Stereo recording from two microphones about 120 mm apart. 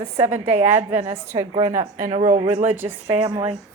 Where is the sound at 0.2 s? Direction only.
15° right (ahead or behind).